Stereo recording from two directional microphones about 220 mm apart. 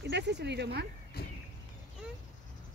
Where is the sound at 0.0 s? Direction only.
50° right (ahead or behind).